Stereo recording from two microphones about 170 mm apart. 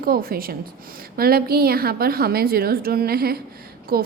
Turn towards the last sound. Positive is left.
turn(degrees=-60)  # may be behind; listen again after turning